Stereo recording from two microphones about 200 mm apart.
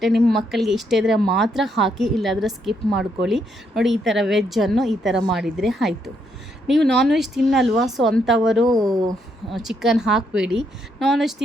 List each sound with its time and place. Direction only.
0.3 s speech: centre (ahead or behind)
8.7 s speech: 20° right (ahead or behind)
9.5 s speech: centre (ahead or behind)